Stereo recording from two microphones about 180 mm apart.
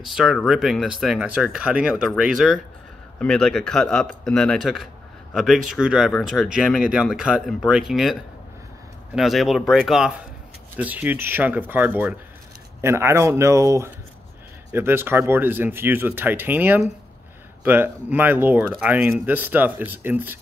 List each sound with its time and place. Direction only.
0.0 s speech: centre (ahead or behind)